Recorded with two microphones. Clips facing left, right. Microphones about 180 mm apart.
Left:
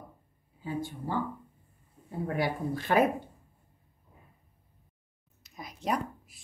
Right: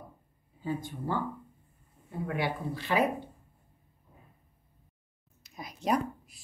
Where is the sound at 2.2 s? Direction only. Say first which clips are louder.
Left 2 dB; 40° left (ahead or behind).